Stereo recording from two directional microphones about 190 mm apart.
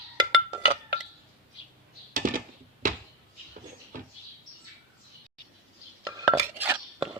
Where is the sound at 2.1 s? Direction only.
45° right (ahead or behind).